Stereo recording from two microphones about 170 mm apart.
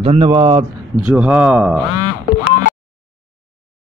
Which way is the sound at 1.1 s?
5° right (ahead or behind).